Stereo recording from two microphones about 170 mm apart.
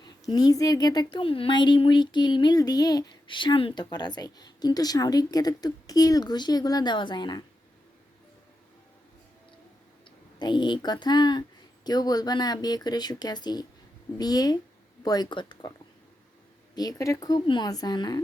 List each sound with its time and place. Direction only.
0.0 s speech: 25° left (ahead or behind)
10.3 s speech: 25° left (ahead or behind)
16.7 s speech: 20° left (ahead or behind)